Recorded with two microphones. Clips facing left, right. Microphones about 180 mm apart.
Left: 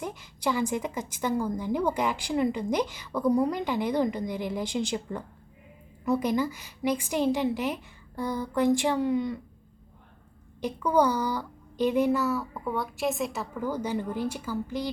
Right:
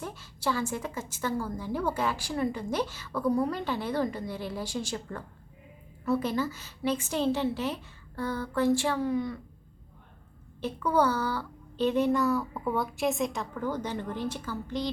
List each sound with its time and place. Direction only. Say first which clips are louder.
0.0 s a woman's voice: left 2 dB; 15° left (ahead or behind)
10.6 s a woman's voice: left 2 dB; 15° left (ahead or behind)